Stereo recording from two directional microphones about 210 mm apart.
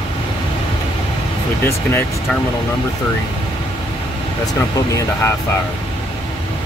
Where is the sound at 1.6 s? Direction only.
10° left (ahead or behind).